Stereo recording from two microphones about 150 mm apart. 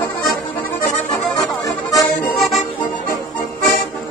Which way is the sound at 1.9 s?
Centre (ahead or behind).